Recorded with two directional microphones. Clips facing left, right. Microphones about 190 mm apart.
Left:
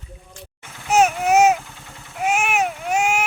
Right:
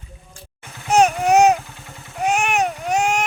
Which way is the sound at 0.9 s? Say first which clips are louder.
Right 1 dB; 5° left (ahead or behind).